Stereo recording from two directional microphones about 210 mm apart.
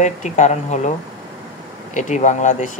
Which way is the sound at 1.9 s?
35° left (ahead or behind).